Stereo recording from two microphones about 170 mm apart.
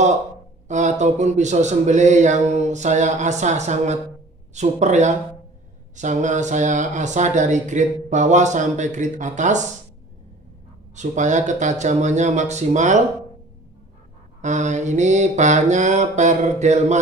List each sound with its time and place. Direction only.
0.7 s speech: 45° right (ahead or behind)
11.0 s speech: 45° right (ahead or behind)
14.4 s speech: 45° right (ahead or behind)